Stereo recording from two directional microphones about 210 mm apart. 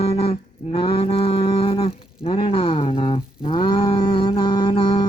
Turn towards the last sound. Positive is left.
turn(degrees=25)  # may be behind; listen again after turning